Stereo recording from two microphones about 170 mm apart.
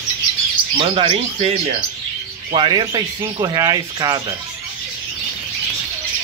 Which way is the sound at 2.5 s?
25° right (ahead or behind).